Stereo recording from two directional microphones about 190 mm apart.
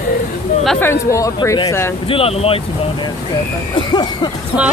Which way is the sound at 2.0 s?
30° left (ahead or behind).